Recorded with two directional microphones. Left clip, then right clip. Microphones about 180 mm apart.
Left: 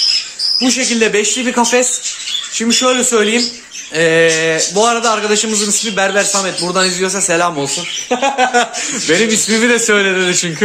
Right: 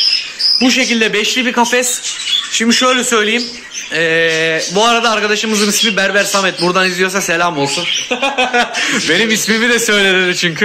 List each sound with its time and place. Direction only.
0.7 s a man's voice: 5° left (ahead or behind)
7.5 s speech: 30° left (ahead or behind)
8.8 s a man's voice: 10° left (ahead or behind)